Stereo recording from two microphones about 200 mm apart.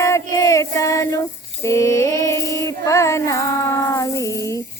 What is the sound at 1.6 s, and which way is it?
Female singing, 15° left (ahead or behind).